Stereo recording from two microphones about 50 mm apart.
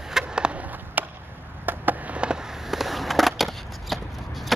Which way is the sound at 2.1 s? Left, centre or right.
Right.